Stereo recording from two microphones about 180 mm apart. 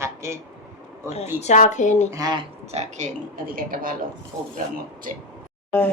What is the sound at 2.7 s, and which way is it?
A woman's voice, 40° right (ahead or behind).